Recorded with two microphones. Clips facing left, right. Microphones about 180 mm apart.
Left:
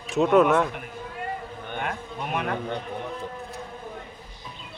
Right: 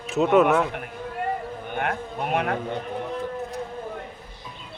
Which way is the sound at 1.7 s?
50° right (ahead or behind).